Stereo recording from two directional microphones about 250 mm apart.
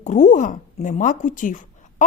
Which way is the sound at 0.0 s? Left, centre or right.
Left.